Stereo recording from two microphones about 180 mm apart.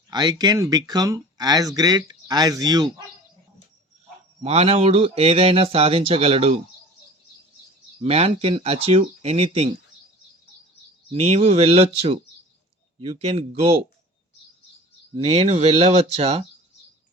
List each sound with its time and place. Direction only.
0.1 s speech: 25° right (ahead or behind)
4.4 s speech: 35° right (ahead or behind)
8.0 s speech: 35° right (ahead or behind)
11.1 s speech: 35° right (ahead or behind)
15.1 s speech: 35° right (ahead or behind)